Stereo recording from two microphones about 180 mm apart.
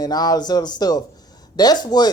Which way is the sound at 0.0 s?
20° left (ahead or behind).